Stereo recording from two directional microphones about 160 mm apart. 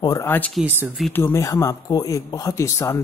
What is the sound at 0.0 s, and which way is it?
Speech, 20° left (ahead or behind).